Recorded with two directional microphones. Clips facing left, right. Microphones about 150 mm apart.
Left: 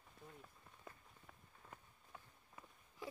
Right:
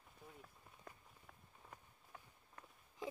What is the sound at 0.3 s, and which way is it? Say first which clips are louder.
Run: even; centre (ahead or behind).